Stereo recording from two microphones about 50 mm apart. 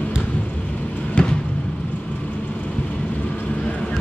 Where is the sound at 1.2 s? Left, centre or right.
Left.